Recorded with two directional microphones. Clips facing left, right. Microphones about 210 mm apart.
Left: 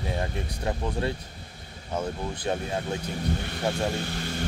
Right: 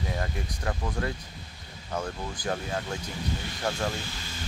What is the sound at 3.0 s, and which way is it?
Speech, 60° left (ahead or behind).